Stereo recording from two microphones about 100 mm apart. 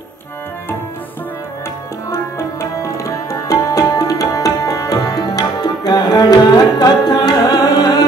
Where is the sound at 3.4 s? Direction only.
35° left (ahead or behind).